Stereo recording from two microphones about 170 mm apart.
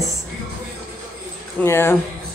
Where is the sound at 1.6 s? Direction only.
15° left (ahead or behind).